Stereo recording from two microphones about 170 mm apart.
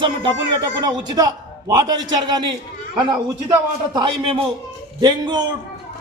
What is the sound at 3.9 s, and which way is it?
A man's voice, 30° right (ahead or behind).